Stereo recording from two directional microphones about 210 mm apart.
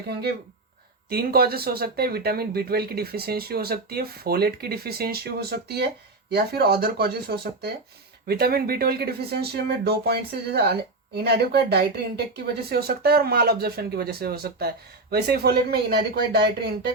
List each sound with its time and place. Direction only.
0.1 s speech: 50° right (ahead or behind)